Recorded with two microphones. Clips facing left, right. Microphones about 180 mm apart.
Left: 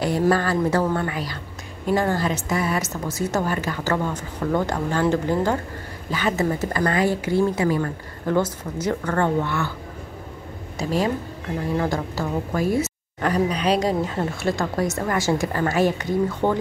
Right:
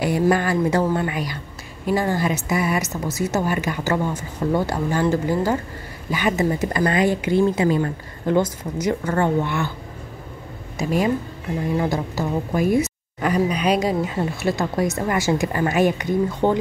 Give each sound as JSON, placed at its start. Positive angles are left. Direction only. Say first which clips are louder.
{"t": 0.3, "sound": "a woman's voice", "louder": "even", "side_deg": -15}
{"t": 10.8, "sound": "a woman's voice", "louder": "right 2 dB", "side_deg": -10}